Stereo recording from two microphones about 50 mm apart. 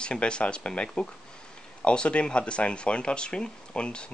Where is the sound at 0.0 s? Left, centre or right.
Left.